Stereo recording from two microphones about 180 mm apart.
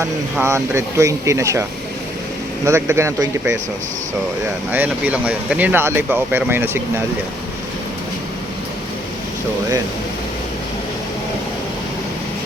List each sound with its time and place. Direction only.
0.0 s speech: 15° right (ahead or behind)
2.6 s speech: 15° right (ahead or behind)
4.7 s speech: 10° right (ahead or behind)